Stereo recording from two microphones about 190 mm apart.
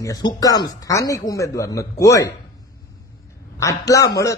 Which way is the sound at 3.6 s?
15° left (ahead or behind).